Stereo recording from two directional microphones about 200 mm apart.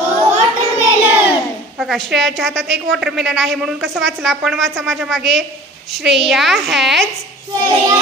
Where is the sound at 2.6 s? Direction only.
60° right (ahead or behind).